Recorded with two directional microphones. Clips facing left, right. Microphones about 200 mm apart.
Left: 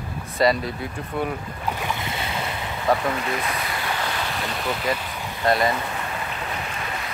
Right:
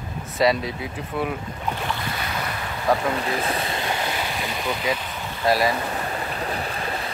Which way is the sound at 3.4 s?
30° right (ahead or behind).